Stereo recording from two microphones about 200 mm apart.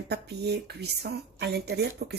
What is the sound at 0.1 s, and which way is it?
Speech, 55° right (ahead or behind).